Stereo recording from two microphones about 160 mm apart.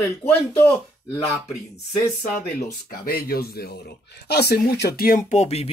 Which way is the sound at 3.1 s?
75° left (ahead or behind).